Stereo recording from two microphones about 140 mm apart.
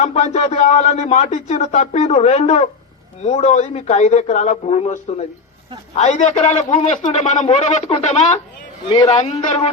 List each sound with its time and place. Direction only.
0.0 s speech: 50° left (ahead or behind)